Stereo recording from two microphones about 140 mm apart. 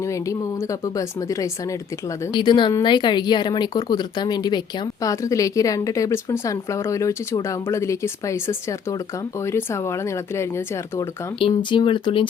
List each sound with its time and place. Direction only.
0.3 s a woman's voice: 25° left (ahead or behind)
11.3 s a woman's voice: 35° left (ahead or behind)